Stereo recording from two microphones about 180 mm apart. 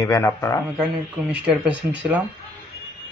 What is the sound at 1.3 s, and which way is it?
Speech, 5° right (ahead or behind).